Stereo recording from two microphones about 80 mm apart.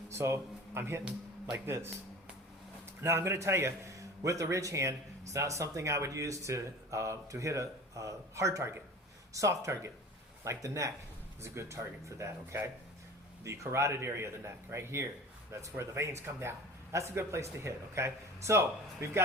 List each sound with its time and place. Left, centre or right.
0.1 s a man's voice: right
3.0 s a man's voice: right